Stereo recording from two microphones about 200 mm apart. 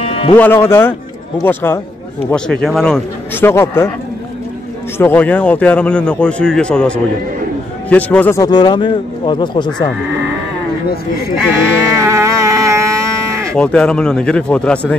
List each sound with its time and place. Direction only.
0.0 s music: 30° left (ahead or behind)
0.4 s a man's voice: 10° left (ahead or behind)
4.9 s a man's voice: 10° left (ahead or behind)
12.0 s music: 15° right (ahead or behind)
13.6 s a man's voice: 5° left (ahead or behind)